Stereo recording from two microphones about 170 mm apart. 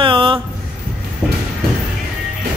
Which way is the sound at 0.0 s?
30° right (ahead or behind).